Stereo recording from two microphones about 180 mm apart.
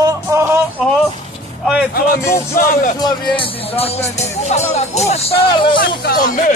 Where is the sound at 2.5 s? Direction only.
50° left (ahead or behind).